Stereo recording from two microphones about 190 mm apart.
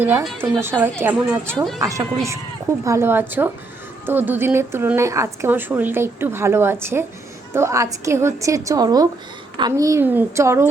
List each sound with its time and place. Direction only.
0.0 s speech: 15° right (ahead or behind)
1.5 s speech: centre (ahead or behind)
1.8 s speech: 15° right (ahead or behind)